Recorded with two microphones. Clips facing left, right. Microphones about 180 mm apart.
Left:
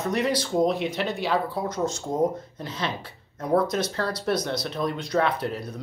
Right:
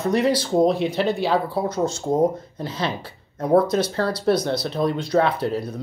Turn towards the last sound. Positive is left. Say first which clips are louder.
# right 5 dB
turn(degrees=-30)  # may be behind; listen again after turning